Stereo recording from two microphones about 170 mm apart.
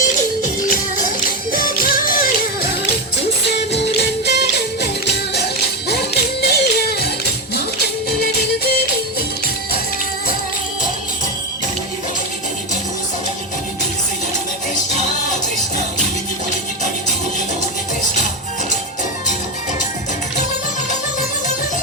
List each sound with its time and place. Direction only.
0.0 s music: 50° left (ahead or behind)
3.2 s music: 90° left
5.9 s music: 70° left (ahead or behind)
8.2 s music: 65° left (ahead or behind)